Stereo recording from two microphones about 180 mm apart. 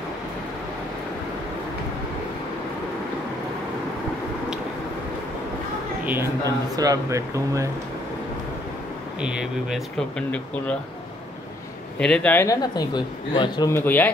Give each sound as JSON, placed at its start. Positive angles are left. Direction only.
{"t": 6.0, "sound": "speech", "side_deg": -15}
{"t": 9.2, "sound": "speech", "side_deg": -5}
{"t": 12.0, "sound": "speech", "side_deg": 5}
{"t": 13.7, "sound": "speech", "side_deg": 15}